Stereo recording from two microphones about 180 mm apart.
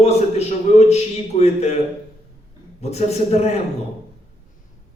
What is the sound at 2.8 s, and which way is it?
Speech, 35° left (ahead or behind).